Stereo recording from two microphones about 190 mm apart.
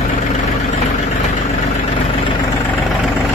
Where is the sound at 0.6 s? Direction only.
35° left (ahead or behind).